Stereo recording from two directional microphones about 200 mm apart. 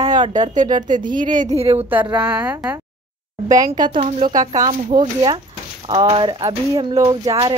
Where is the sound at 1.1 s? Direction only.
40° right (ahead or behind).